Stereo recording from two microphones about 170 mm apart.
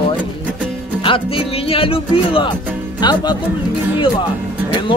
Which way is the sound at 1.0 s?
30° left (ahead or behind).